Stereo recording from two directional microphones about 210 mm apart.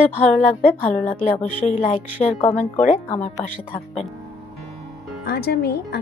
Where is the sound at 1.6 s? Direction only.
35° left (ahead or behind).